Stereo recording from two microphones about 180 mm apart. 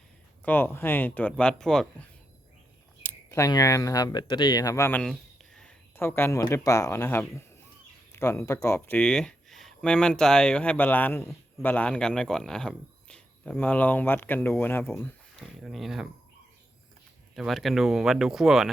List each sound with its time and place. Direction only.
0.4 s speech: 10° left (ahead or behind)
15.4 s speech: centre (ahead or behind)
17.3 s speech: centre (ahead or behind)